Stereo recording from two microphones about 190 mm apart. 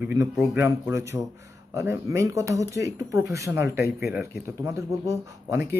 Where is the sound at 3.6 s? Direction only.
60° left (ahead or behind).